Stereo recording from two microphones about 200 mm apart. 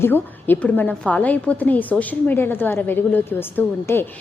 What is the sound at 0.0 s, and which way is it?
A woman's voice, 10° left (ahead or behind).